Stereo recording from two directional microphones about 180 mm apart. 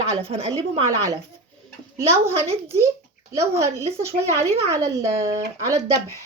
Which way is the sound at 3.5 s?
15° right (ahead or behind).